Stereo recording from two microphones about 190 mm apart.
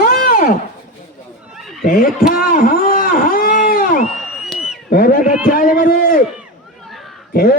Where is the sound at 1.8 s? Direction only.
50° left (ahead or behind).